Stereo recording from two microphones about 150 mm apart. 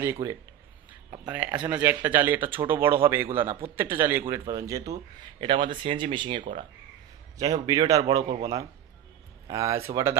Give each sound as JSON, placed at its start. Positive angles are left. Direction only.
{"t": 0.0, "sound": "speech", "side_deg": -20}
{"t": 1.3, "sound": "speech", "side_deg": -10}
{"t": 5.4, "sound": "speech", "side_deg": -35}
{"t": 9.5, "sound": "speech", "side_deg": -20}